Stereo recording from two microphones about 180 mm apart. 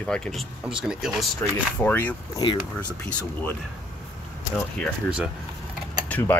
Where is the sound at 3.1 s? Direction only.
5° left (ahead or behind).